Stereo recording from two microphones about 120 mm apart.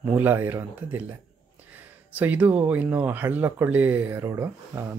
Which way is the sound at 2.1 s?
15° right (ahead or behind).